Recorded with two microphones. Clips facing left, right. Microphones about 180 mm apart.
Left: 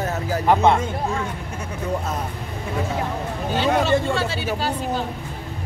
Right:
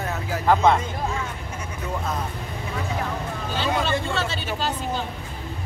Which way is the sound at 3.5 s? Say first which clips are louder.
Left 5 dB; 50° left (ahead or behind).